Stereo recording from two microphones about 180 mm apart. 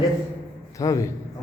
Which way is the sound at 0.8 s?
20° left (ahead or behind).